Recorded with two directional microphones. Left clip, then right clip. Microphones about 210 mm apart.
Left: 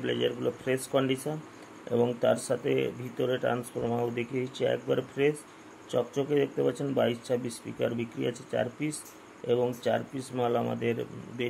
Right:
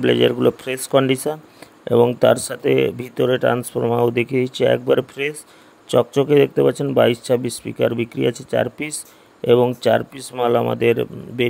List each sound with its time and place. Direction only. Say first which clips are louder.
0.0 s speech: right 14 dB; 45° right (ahead or behind)